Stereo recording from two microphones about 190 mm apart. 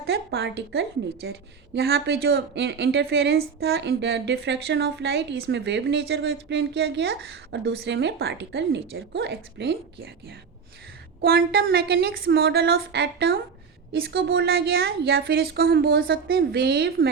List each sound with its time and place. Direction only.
0.0 s a woman's voice: 60° right (ahead or behind)